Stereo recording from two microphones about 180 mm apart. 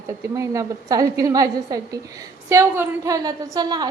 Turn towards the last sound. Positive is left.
turn(degrees=-25)  # may be behind; listen again after turning